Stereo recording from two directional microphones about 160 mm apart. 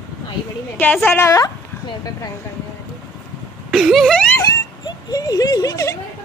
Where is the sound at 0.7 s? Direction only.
10° left (ahead or behind).